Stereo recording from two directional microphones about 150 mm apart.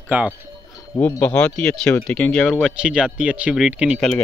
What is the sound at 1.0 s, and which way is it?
Speech, 10° left (ahead or behind).